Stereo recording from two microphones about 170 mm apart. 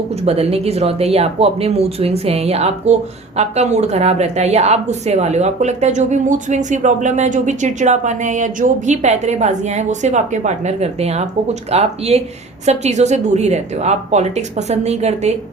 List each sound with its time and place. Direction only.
0.3 s a woman's voice: 35° right (ahead or behind)